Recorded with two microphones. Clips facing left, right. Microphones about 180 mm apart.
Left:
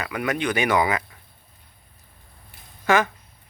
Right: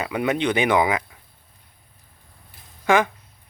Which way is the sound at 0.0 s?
25° right (ahead or behind).